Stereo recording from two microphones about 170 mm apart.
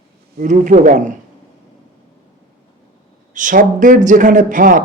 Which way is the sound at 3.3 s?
50° right (ahead or behind).